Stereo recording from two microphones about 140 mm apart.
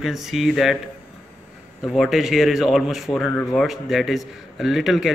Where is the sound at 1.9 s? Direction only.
Centre (ahead or behind).